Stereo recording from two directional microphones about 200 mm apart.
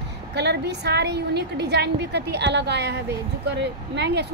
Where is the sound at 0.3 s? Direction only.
55° right (ahead or behind).